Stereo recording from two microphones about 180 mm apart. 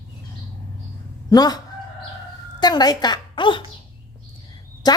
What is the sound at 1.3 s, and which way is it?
Speech, 20° left (ahead or behind).